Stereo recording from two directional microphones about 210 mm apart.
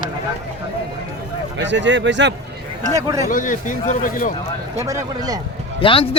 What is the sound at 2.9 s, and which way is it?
Speech, 15° right (ahead or behind).